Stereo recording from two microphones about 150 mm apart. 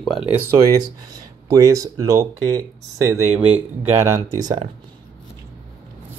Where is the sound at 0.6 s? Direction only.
25° right (ahead or behind).